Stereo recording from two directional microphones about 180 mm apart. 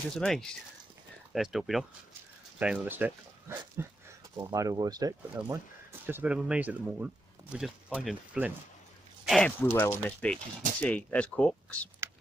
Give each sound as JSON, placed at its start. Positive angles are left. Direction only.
{"t": 0.1, "sound": "speech", "side_deg": 5}